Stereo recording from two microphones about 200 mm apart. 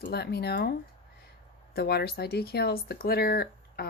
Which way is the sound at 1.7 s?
50° left (ahead or behind).